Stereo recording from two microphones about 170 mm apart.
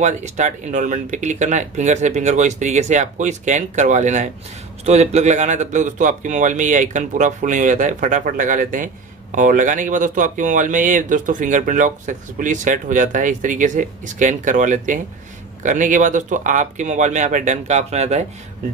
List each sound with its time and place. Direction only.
0.0 s speech: 40° right (ahead or behind)